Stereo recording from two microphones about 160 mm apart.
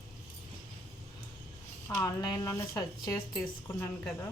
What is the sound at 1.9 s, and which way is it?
A woman's voice, 15° left (ahead or behind).